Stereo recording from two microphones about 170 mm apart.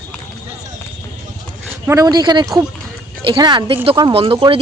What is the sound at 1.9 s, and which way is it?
Speech, 20° right (ahead or behind).